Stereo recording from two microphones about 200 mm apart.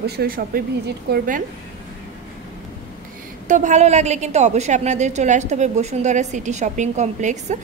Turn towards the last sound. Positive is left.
turn(degrees=-35)  # may be behind; listen again after turning